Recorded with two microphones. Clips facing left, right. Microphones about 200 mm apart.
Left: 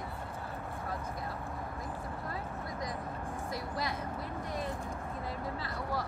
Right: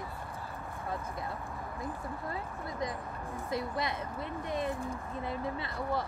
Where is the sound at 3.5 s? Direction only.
25° right (ahead or behind).